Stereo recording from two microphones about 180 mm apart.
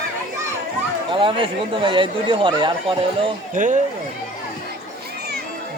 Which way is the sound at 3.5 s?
45° right (ahead or behind).